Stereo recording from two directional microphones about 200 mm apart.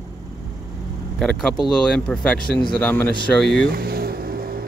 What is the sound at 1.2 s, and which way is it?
A man's voice, centre (ahead or behind).